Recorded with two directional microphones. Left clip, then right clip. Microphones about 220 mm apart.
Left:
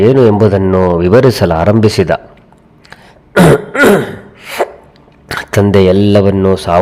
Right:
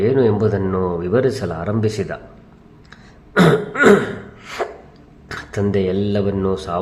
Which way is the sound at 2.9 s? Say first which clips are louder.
Left 8 dB; 40° left (ahead or behind).